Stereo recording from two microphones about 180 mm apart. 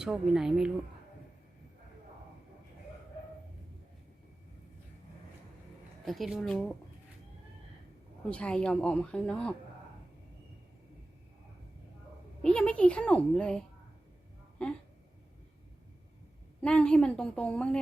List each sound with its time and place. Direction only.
0.0 s speech: 5° right (ahead or behind)
6.1 s speech: centre (ahead or behind)
8.2 s speech: 5° left (ahead or behind)
12.4 s speech: 5° left (ahead or behind)
16.6 s speech: 5° left (ahead or behind)